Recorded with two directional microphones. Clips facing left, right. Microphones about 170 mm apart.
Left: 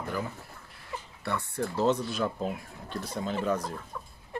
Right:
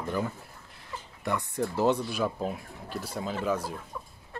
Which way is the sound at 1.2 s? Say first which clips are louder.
Right 2 dB; 15° right (ahead or behind).